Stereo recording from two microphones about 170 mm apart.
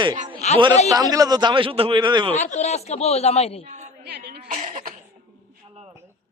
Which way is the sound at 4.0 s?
65° right (ahead or behind).